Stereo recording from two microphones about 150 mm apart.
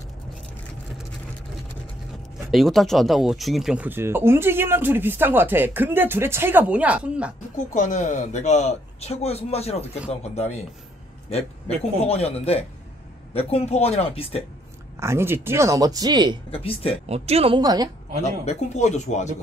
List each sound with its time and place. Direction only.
2.5 s speech: centre (ahead or behind)
7.5 s speech: 55° left (ahead or behind)
15.0 s speech: 15° right (ahead or behind)
16.5 s speech: 40° left (ahead or behind)
17.0 s speech: 45° right (ahead or behind)
17.6 s speech: 25° right (ahead or behind)
18.4 s speech: 50° left (ahead or behind)